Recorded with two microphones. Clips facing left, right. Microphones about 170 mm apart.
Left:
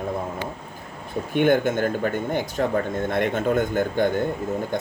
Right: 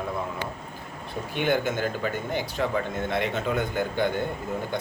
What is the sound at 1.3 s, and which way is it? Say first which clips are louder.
Speech: left 6 dB; 50° left (ahead or behind).